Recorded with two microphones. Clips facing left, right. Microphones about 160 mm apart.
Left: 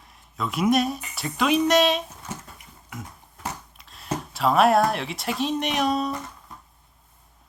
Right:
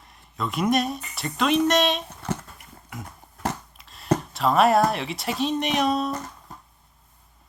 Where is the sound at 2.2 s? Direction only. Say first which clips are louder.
Right 7 dB; 65° right (ahead or behind).